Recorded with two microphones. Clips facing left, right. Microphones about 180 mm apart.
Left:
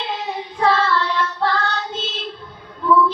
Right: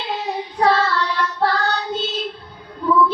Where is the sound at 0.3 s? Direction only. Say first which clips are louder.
Right 1 dB; 40° right (ahead or behind).